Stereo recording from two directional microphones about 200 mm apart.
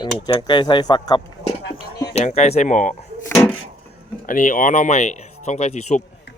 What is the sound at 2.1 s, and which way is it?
Speech, 35° left (ahead or behind).